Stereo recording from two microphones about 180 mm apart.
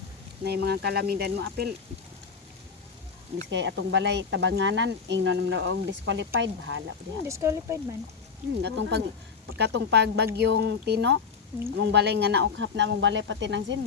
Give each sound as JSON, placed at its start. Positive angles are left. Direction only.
{"t": 0.4, "sound": "speech", "side_deg": -65}
{"t": 3.5, "sound": "speech", "side_deg": -90}
{"t": 7.3, "sound": "speech", "side_deg": -15}
{"t": 8.6, "sound": "speech", "side_deg": -70}